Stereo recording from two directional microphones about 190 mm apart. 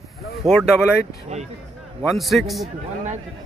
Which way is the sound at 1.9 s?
Centre (ahead or behind).